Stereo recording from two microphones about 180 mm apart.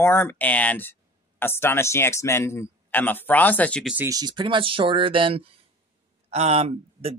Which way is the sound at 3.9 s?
20° right (ahead or behind).